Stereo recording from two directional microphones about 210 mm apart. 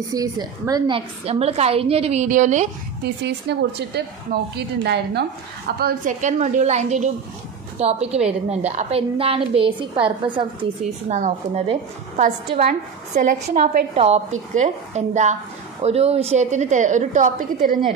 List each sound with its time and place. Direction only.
0.1 s a woman's voice: 15° right (ahead or behind); by 2.7 s 35° right (ahead or behind)
3.0 s a woman's voice: 50° right (ahead or behind)